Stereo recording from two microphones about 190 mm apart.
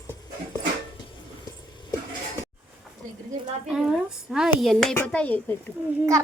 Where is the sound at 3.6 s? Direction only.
5° right (ahead or behind).